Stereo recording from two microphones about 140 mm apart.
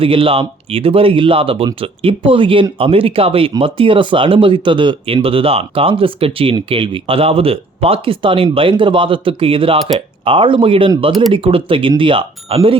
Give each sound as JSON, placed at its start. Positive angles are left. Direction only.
{"t": 0.0, "sound": "speech", "side_deg": -40}
{"t": 9.7, "sound": "speech", "side_deg": 0}
{"t": 10.2, "sound": "speech", "side_deg": -40}